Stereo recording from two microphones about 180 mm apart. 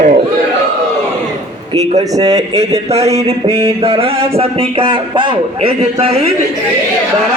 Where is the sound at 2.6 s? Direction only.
35° right (ahead or behind).